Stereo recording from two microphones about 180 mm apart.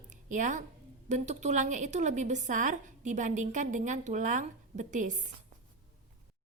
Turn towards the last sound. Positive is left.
turn(degrees=-45)  # may be behind; listen again after turning